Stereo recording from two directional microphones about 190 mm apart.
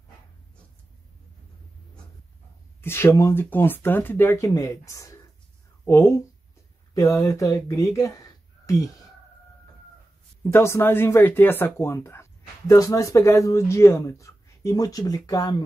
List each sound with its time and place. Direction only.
2.8 s speech: 15° left (ahead or behind)
10.4 s speech: 15° left (ahead or behind)